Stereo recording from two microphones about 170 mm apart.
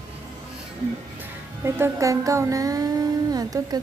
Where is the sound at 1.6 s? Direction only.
15° right (ahead or behind).